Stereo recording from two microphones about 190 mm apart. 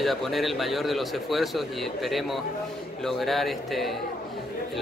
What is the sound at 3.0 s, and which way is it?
Speech, centre (ahead or behind).